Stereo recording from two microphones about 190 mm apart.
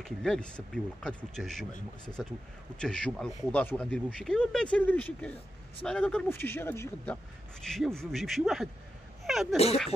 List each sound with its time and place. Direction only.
0.0 s speech: centre (ahead or behind)
9.2 s sneeze: centre (ahead or behind)